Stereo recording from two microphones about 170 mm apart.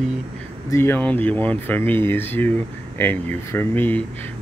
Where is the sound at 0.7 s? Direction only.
15° left (ahead or behind).